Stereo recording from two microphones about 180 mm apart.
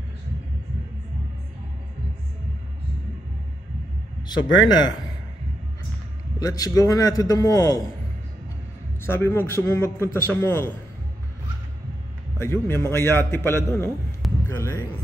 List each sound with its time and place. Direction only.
4.6 s a man's voice: 25° left (ahead or behind)
6.4 s a man's voice: 20° left (ahead or behind)
9.0 s a man's voice: 10° left (ahead or behind)
12.4 s a man's voice: 15° left (ahead or behind)